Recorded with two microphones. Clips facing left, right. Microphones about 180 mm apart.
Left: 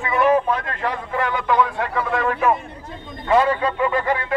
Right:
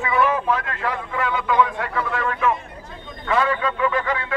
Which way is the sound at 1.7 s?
25° left (ahead or behind).